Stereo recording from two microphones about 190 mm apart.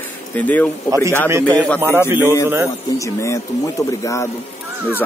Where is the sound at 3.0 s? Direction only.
15° left (ahead or behind).